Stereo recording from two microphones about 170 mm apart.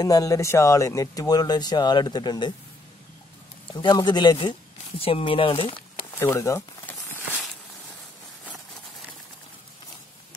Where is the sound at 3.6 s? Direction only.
30° left (ahead or behind).